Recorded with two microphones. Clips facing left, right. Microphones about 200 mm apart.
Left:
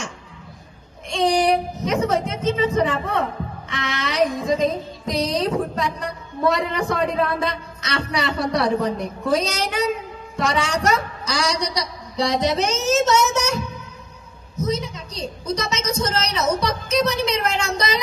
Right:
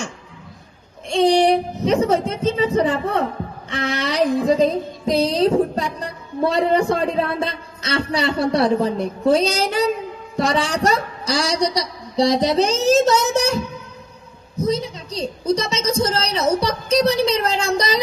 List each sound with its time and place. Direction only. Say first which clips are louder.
1.1 s a woman's voice: right 4 dB; 30° right (ahead or behind)
3.7 s music: right 4 dB; 30° right (ahead or behind)
10.3 s a woman's voice: right 2 dB; 35° right (ahead or behind)